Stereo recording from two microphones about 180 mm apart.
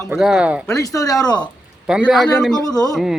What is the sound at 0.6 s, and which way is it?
Speech, 20° left (ahead or behind).